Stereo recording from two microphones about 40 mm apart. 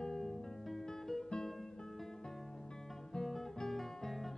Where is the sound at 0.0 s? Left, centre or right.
Centre.